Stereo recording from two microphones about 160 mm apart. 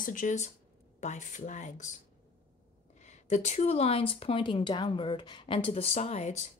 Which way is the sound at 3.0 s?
45° left (ahead or behind).